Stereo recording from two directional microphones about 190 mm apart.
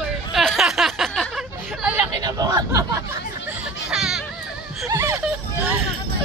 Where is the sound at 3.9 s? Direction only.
Centre (ahead or behind).